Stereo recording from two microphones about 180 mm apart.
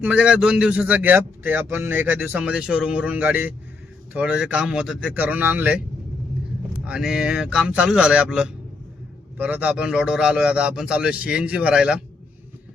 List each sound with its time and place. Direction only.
0.0 s a man's voice: 5° right (ahead or behind)
6.8 s a man's voice: 5° right (ahead or behind)